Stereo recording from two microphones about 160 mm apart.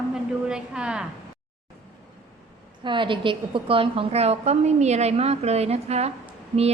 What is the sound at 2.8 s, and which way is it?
A woman's voice, 30° right (ahead or behind).